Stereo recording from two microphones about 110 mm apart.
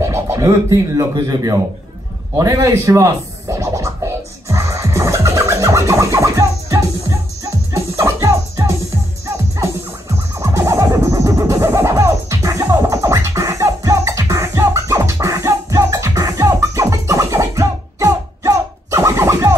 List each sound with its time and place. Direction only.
0.0 s speech: 25° right (ahead or behind)
2.3 s scratching: 30° right (ahead or behind)
10.4 s music: 30° right (ahead or behind)